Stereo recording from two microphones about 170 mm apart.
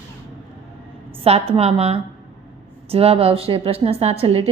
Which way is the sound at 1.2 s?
35° right (ahead or behind).